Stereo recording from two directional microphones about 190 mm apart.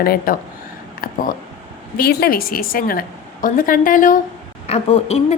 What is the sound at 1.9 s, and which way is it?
A woman's voice, 55° left (ahead or behind).